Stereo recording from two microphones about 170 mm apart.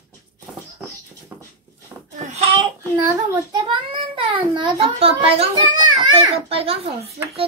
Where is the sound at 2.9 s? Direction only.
15° right (ahead or behind).